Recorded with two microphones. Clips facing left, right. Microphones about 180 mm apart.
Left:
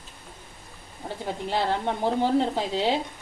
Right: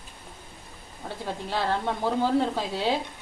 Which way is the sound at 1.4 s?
15° left (ahead or behind).